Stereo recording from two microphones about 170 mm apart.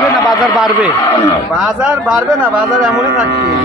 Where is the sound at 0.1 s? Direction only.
20° left (ahead or behind).